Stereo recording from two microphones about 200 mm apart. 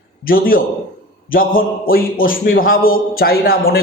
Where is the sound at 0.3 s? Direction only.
45° left (ahead or behind).